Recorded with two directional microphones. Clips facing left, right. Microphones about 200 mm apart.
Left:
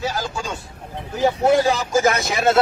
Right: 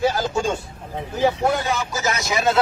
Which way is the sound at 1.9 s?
55° left (ahead or behind).